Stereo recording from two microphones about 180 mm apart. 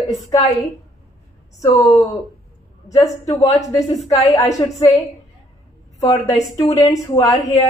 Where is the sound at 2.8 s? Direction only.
20° left (ahead or behind).